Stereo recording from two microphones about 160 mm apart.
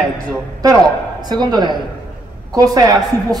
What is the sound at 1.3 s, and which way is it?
A man's voice, 25° right (ahead or behind).